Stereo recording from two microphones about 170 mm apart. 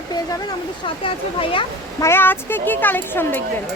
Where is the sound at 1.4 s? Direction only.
30° left (ahead or behind).